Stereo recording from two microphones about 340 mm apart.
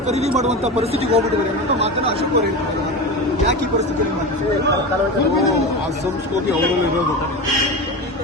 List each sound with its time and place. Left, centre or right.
0.1 s a man's voice: centre